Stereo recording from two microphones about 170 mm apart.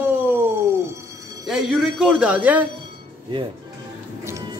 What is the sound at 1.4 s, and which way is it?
A man's voice, 5° right (ahead or behind).